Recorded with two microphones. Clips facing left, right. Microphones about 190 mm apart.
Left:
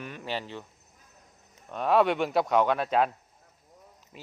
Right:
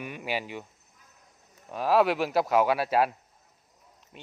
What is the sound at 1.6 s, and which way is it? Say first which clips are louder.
Speech: even; 5° right (ahead or behind).